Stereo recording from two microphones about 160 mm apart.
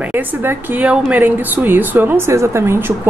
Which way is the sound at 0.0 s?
10° right (ahead or behind).